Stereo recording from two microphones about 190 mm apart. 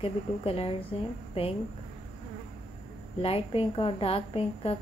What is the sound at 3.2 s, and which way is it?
A woman's voice, 30° left (ahead or behind).